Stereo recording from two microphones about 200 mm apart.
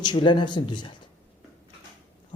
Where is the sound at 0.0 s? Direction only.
25° left (ahead or behind).